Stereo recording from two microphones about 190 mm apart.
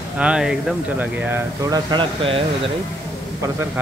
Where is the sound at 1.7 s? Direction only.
25° right (ahead or behind).